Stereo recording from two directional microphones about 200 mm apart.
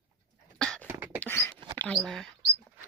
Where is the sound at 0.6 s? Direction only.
5° left (ahead or behind).